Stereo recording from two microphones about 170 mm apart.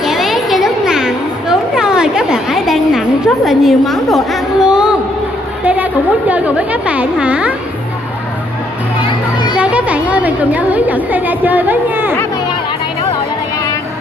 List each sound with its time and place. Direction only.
0.0 s a sound: centre (ahead or behind)
3.4 s a woman's voice: centre (ahead or behind)
9.0 s music: 25° left (ahead or behind)
9.6 s a woman's voice: 5° right (ahead or behind)